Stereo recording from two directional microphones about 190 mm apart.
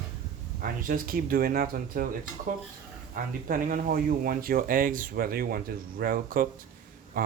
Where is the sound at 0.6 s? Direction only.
50° right (ahead or behind).